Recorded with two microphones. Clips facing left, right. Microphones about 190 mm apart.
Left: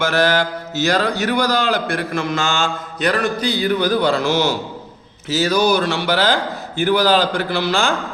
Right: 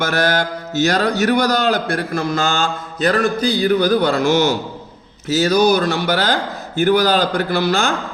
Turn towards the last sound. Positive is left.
turn(degrees=-40)  # may be behind; listen again after turning